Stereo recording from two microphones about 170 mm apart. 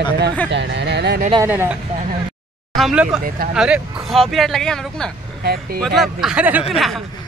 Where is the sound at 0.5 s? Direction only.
90° right.